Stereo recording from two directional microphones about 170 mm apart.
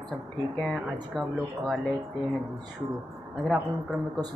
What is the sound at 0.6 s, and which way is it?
Speech, 5° left (ahead or behind).